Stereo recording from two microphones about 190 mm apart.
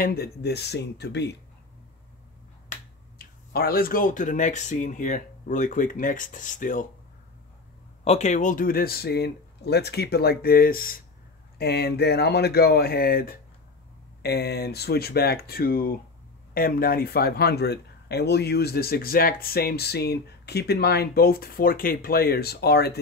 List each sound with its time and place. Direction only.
0.0 s speech: 55° left (ahead or behind)
3.2 s speech: 50° left (ahead or behind)
8.0 s speech: 35° left (ahead or behind); by 22.9 s 60° left (ahead or behind)